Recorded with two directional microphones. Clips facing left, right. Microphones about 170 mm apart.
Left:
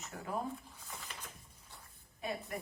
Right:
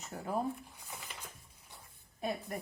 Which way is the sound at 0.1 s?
30° right (ahead or behind).